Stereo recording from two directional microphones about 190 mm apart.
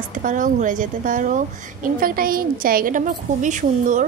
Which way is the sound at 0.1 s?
45° right (ahead or behind).